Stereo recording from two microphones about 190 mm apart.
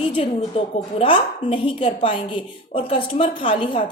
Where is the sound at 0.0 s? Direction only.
30° left (ahead or behind).